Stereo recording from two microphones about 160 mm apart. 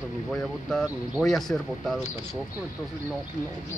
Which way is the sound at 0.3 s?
Centre (ahead or behind).